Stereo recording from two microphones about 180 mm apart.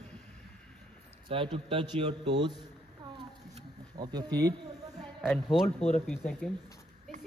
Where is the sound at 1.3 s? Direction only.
30° right (ahead or behind).